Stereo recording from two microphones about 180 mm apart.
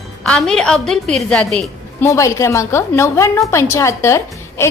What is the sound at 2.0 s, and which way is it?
A woman's voice, 15° left (ahead or behind).